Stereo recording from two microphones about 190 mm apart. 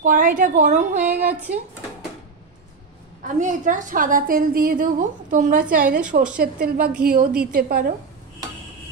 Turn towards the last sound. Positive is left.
turn(degrees=-50)  # may be behind; listen again after turning